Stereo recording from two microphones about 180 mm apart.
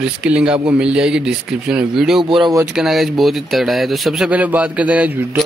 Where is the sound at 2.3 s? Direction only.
20° right (ahead or behind).